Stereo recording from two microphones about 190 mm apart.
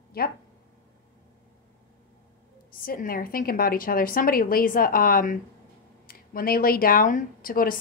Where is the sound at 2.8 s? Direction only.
50° left (ahead or behind).